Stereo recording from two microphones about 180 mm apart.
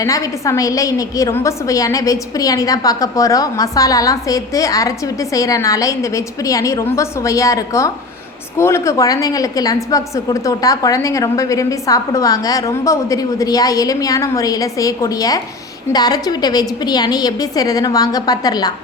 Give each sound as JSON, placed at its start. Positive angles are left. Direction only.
{"t": 0.0, "sound": "a woman's voice", "side_deg": 20}